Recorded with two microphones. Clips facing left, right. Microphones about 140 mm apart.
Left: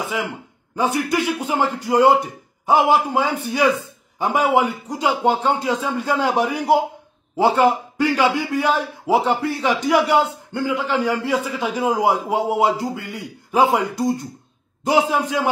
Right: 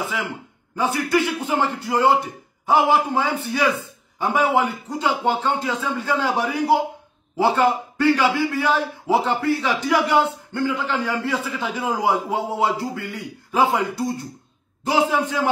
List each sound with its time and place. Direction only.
0.0 s a man's voice: 15° left (ahead or behind)